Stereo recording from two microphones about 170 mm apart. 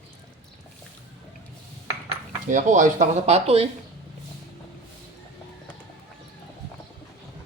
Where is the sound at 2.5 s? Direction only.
50° right (ahead or behind).